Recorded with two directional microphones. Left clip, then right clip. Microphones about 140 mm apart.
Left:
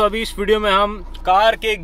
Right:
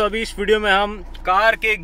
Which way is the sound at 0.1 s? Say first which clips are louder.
Left 1 dB; 10° left (ahead or behind).